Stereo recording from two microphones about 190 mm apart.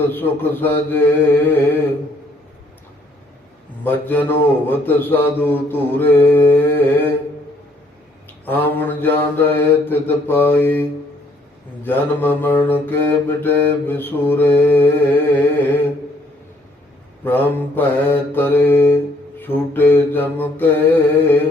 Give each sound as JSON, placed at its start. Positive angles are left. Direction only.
{"t": 0.1, "sound": "mantra", "side_deg": 10}
{"t": 3.8, "sound": "mantra", "side_deg": 10}
{"t": 8.4, "sound": "mantra", "side_deg": 10}
{"t": 17.2, "sound": "mantra", "side_deg": 10}